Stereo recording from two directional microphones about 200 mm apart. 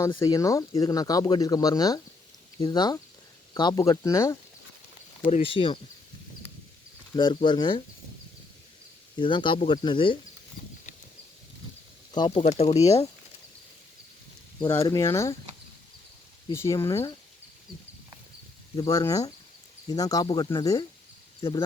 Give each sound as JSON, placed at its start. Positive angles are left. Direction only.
{"t": 0.0, "sound": "speech", "side_deg": 15}
{"t": 5.2, "sound": "speech", "side_deg": 25}
{"t": 7.2, "sound": "speech", "side_deg": 25}
{"t": 9.1, "sound": "speech", "side_deg": 25}
{"t": 12.1, "sound": "speech", "side_deg": 20}
{"t": 12.4, "sound": "speech", "side_deg": 35}
{"t": 14.6, "sound": "speech", "side_deg": 20}
{"t": 16.5, "sound": "speech", "side_deg": 15}
{"t": 18.8, "sound": "speech", "side_deg": 15}